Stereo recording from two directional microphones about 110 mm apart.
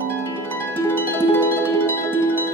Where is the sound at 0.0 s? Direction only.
20° left (ahead or behind).